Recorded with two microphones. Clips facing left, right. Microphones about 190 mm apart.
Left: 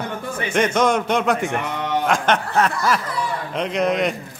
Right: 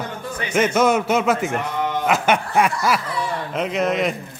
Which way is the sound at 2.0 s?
5° right (ahead or behind).